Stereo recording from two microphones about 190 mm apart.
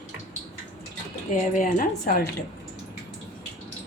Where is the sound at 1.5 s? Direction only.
45° left (ahead or behind).